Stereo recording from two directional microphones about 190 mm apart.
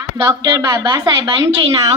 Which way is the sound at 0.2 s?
20° right (ahead or behind).